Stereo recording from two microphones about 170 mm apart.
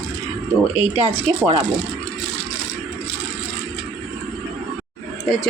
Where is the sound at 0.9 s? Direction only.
35° right (ahead or behind).